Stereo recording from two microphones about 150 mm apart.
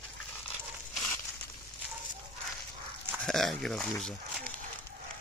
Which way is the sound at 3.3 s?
Centre (ahead or behind).